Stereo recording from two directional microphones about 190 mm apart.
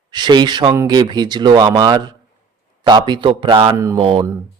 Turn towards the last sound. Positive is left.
turn(degrees=-25)  # may be behind; listen again after turning